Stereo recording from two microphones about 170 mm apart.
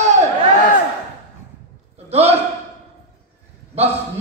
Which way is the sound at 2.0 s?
40° right (ahead or behind).